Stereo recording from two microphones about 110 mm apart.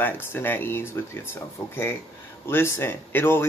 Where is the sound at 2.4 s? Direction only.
20° left (ahead or behind).